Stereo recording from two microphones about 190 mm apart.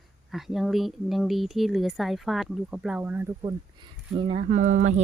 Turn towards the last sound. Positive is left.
turn(degrees=-40)  # may be behind; listen again after turning